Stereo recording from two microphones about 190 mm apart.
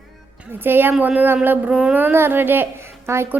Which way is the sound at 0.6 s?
10° right (ahead or behind).